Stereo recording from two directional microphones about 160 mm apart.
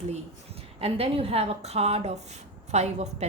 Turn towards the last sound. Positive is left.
turn(degrees=-40)  # may be behind; listen again after turning